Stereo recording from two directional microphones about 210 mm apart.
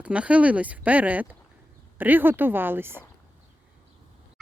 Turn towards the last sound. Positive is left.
turn(degrees=-10)  # may be behind; listen again after turning